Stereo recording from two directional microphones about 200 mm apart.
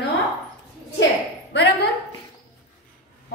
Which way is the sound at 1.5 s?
60° left (ahead or behind).